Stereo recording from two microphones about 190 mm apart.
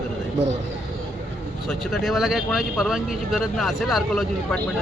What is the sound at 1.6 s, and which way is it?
Speech, centre (ahead or behind).